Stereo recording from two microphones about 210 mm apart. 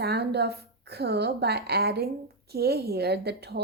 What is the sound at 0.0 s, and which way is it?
A woman's voice, 50° right (ahead or behind).